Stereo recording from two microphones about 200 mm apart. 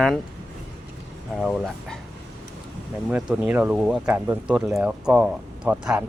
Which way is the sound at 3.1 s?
5° right (ahead or behind).